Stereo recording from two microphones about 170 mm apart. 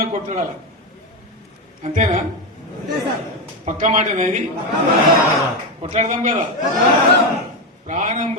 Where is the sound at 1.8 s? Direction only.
45° right (ahead or behind).